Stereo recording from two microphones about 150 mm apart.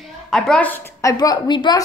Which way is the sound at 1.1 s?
25° left (ahead or behind).